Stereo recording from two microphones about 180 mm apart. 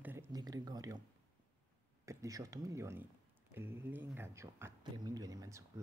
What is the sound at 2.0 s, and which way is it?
Speech, 20° right (ahead or behind).